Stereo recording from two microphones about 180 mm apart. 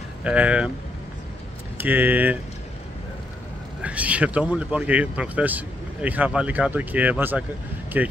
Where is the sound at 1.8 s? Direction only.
10° right (ahead or behind).